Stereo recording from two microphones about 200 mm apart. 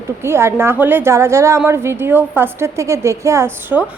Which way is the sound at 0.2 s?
10° right (ahead or behind).